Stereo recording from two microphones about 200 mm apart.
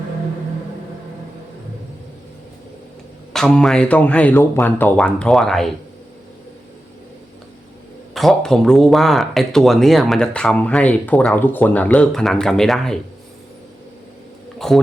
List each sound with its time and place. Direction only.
3.3 s speech: 5° left (ahead or behind)
8.1 s speech: centre (ahead or behind)
14.6 s speech: centre (ahead or behind)